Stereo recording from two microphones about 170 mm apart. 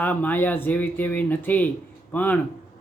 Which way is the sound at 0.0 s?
10° left (ahead or behind).